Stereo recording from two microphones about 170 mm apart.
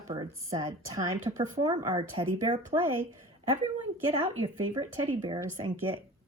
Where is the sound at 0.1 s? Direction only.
20° right (ahead or behind).